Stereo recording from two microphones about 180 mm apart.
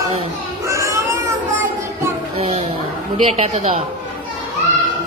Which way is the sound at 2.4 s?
30° right (ahead or behind).